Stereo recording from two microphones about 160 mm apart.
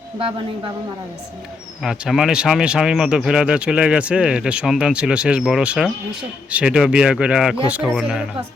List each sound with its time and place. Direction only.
0.2 s speech: 35° right (ahead or behind)
1.8 s speech: centre (ahead or behind)